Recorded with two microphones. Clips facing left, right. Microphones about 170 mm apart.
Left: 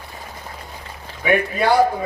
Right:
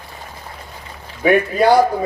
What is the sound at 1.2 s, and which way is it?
Speech, 40° right (ahead or behind).